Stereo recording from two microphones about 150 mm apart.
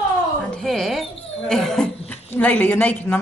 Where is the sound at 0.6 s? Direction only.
Centre (ahead or behind).